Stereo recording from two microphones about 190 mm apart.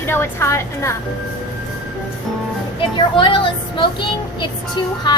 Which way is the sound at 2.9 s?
25° left (ahead or behind).